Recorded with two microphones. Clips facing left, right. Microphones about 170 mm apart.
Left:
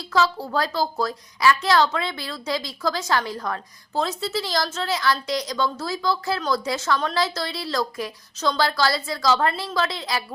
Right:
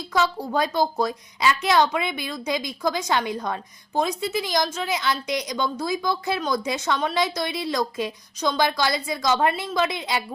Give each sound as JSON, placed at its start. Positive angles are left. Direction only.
{"t": 0.0, "sound": "a woman's voice", "side_deg": -20}